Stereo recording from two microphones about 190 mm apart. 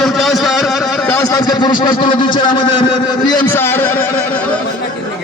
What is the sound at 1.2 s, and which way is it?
A man's voice, 20° left (ahead or behind).